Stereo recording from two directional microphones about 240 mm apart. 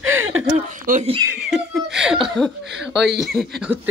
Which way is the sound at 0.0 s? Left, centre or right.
Right.